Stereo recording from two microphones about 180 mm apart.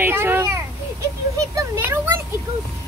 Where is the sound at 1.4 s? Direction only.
15° right (ahead or behind).